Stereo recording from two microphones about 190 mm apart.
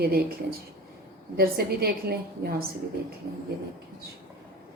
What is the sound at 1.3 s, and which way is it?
A woman's voice, 55° right (ahead or behind).